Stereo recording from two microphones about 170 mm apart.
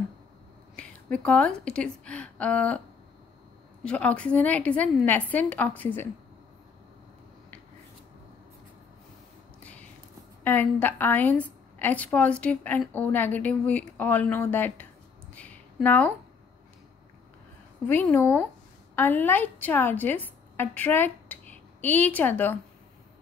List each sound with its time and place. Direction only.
0.7 s a woman's voice: 5° left (ahead or behind)
3.8 s a woman's voice: 5° left (ahead or behind)
9.6 s a sound: 10° left (ahead or behind)
10.4 s a woman's voice: 10° left (ahead or behind)
15.3 s a sound: 10° left (ahead or behind)
17.8 s a woman's voice: 10° left (ahead or behind)